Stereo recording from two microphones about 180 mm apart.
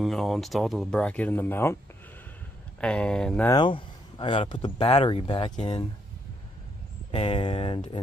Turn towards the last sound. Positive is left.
turn(degrees=30)  # may be behind; listen again after turning